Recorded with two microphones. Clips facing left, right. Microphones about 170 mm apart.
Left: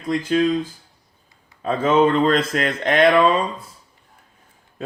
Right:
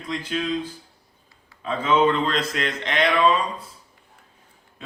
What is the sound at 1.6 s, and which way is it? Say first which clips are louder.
Speech: left 3 dB; 45° left (ahead or behind).